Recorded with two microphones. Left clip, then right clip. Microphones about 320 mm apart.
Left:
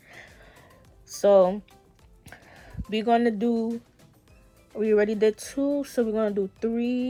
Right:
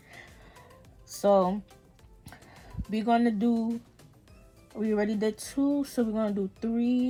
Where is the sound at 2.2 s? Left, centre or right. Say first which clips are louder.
Left 3 dB; centre.